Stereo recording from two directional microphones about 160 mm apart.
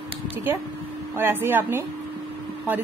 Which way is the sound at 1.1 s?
15° right (ahead or behind).